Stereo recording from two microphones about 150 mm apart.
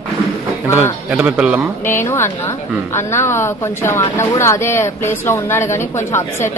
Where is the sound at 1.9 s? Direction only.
15° left (ahead or behind).